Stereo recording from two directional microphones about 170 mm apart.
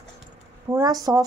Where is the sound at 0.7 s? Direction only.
20° right (ahead or behind).